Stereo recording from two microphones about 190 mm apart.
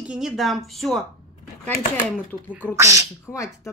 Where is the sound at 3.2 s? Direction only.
15° left (ahead or behind).